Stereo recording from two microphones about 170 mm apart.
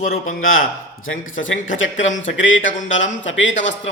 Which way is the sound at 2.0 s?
90° left.